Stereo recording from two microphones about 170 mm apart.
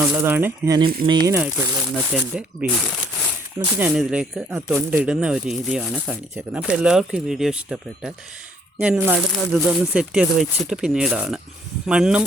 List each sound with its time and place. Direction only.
0.0 s speech: 10° right (ahead or behind)
1.0 s speech: 25° right (ahead or behind)
1.4 s speech: 10° right (ahead or behind)
3.8 s speech: 5° right (ahead or behind)